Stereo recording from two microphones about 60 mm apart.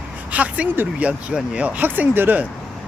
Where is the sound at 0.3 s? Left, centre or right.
Right.